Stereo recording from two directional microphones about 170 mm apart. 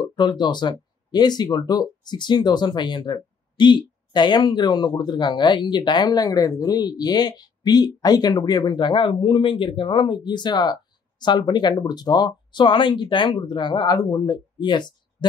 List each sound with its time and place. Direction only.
0.0 s speech: 25° left (ahead or behind)